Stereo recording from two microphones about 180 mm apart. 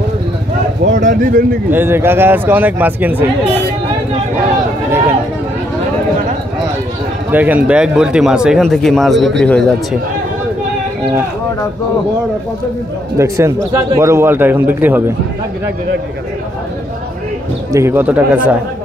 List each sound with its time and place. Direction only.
0.9 s speech: 50° right (ahead or behind)
1.7 s a man's voice: 10° right (ahead or behind)
7.2 s speech: 10° right (ahead or behind)
13.2 s a man's voice: 15° right (ahead or behind)
17.7 s a man's voice: 15° right (ahead or behind)